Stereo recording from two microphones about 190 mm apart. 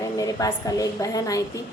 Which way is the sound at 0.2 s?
20° left (ahead or behind).